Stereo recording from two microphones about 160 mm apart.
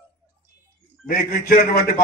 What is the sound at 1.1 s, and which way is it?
Speech, 65° left (ahead or behind).